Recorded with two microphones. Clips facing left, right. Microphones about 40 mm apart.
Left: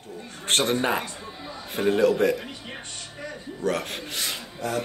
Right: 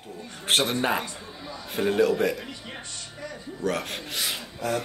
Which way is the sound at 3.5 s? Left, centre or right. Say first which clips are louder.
Left 1 dB; centre.